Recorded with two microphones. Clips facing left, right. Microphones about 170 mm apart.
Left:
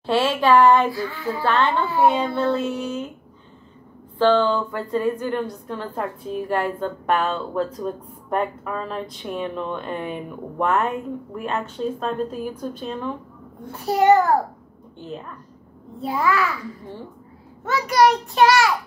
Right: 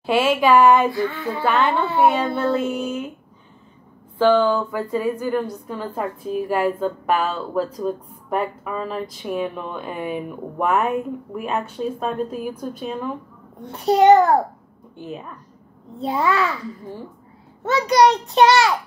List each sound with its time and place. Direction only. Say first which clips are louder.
0.0 s a woman's voice: right 2 dB; 10° right (ahead or behind)
0.8 s a child's voice: right 3 dB; 20° right (ahead or behind)
1.8 s a child's voice: right 1 dB; 25° right (ahead or behind)
2.5 s a woman's voice: right 2 dB; 10° right (ahead or behind)
4.2 s a woman's voice: right 1 dB; 10° right (ahead or behind)
13.7 s a child's voice: right 3 dB; 20° right (ahead or behind)
15.0 s a woman's voice: right 1 dB; 10° right (ahead or behind)
16.0 s a child's voice: right 1 dB; 25° right (ahead or behind)
17.6 s a child's voice: right 2 dB; 20° right (ahead or behind)